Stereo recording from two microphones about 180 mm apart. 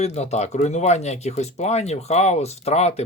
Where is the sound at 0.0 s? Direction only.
40° left (ahead or behind).